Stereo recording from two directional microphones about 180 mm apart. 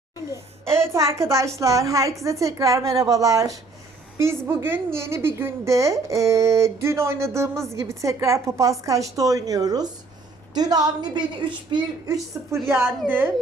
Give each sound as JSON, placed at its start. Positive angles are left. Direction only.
{"t": 0.3, "sound": "a woman's voice", "side_deg": -15}